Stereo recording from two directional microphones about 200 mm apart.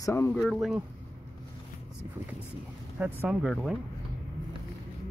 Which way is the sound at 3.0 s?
5° right (ahead or behind).